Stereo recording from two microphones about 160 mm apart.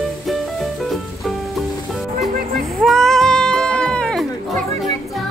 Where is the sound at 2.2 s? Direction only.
70° right (ahead or behind).